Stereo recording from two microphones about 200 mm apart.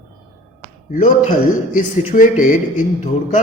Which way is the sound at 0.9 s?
40° left (ahead or behind).